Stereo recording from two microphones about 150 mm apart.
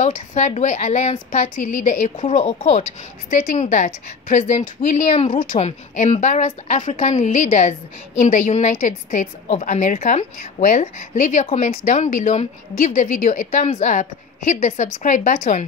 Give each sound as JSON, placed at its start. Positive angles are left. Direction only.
{"t": 0.0, "sound": "a woman's voice", "side_deg": 55}
{"t": 2.1, "sound": "a woman's voice", "side_deg": 40}
{"t": 5.7, "sound": "a woman's voice", "side_deg": 45}